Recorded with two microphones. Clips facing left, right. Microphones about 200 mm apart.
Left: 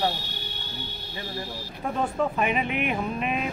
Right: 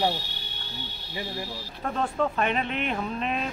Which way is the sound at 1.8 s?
5° left (ahead or behind).